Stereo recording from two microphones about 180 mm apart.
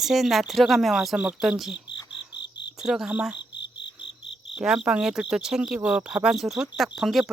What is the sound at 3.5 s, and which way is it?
Cricket, 75° left (ahead or behind).